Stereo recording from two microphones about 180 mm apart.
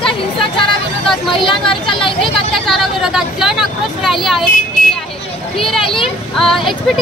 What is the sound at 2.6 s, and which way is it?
Vehicle, centre (ahead or behind).